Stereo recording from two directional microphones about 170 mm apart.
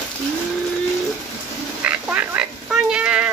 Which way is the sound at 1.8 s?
10° right (ahead or behind).